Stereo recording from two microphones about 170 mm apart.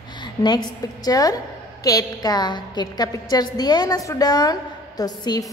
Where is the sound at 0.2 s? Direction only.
25° left (ahead or behind).